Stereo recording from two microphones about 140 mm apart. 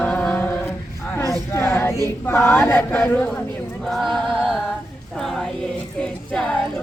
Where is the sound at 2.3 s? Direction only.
15° left (ahead or behind).